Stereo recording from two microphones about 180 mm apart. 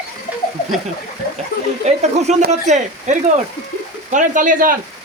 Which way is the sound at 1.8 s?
40° right (ahead or behind).